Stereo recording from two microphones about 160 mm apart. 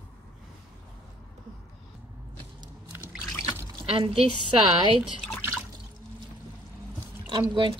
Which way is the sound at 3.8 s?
35° right (ahead or behind).